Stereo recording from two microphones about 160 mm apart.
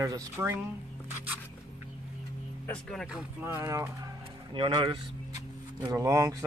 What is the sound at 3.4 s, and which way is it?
Speech, 15° right (ahead or behind).